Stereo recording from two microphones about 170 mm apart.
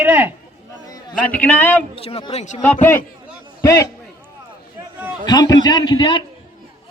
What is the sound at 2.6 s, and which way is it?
A man's voice, 10° left (ahead or behind).